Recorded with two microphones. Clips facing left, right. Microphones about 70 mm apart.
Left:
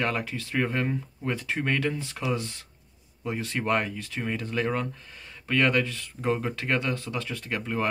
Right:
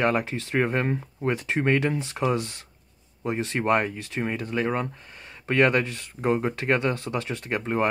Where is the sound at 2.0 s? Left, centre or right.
Right.